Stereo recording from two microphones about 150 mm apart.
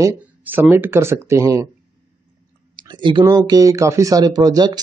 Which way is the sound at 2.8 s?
30° right (ahead or behind).